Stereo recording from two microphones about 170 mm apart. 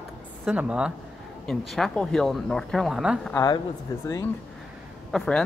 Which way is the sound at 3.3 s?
20° left (ahead or behind).